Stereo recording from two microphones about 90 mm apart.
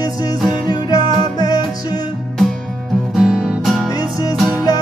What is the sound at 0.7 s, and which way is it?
Music, 50° left (ahead or behind).